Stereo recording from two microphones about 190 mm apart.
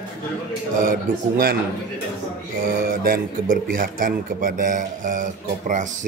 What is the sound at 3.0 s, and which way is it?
Speech, 50° right (ahead or behind).